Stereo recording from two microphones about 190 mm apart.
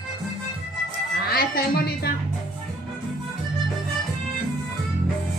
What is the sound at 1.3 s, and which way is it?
Speech, 55° left (ahead or behind).